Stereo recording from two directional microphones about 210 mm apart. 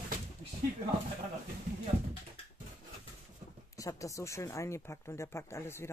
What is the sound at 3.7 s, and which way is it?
Speech, 15° left (ahead or behind).